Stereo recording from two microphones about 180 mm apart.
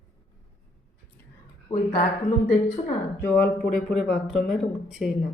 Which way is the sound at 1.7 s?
15° left (ahead or behind).